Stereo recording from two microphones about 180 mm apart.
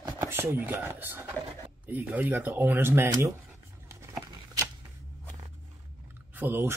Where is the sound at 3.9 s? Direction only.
15° right (ahead or behind).